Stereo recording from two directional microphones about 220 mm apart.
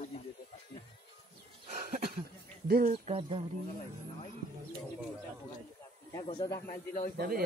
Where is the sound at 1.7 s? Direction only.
35° right (ahead or behind).